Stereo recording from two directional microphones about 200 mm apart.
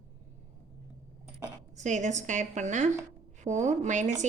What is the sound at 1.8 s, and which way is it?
Speech, 35° right (ahead or behind).